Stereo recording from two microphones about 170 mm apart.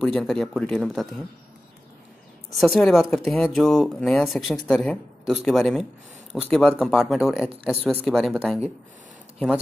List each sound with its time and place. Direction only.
0.0 s speech: 5° left (ahead or behind)
2.5 s speech: centre (ahead or behind)